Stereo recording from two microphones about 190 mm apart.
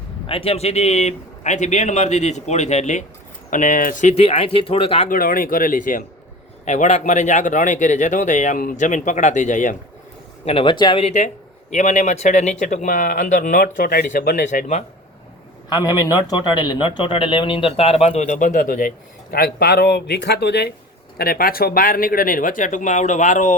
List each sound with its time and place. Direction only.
0.3 s speech: 30° left (ahead or behind)
5.0 s speech: 50° left (ahead or behind)
10.4 s speech: 30° left (ahead or behind)
15.7 s speech: 20° left (ahead or behind); by 23.6 s 40° left (ahead or behind)